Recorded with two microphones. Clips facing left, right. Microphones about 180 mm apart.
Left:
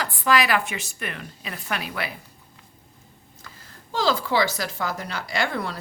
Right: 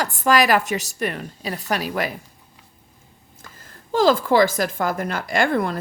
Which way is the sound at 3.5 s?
45° right (ahead or behind).